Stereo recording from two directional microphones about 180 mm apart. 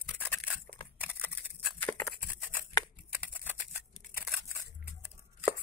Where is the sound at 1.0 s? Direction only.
10° right (ahead or behind).